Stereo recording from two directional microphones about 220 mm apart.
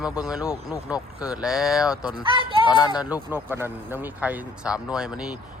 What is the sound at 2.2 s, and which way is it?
Speech, 20° right (ahead or behind).